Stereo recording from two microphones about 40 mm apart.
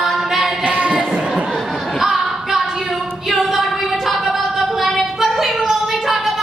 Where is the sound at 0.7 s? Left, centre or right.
Right.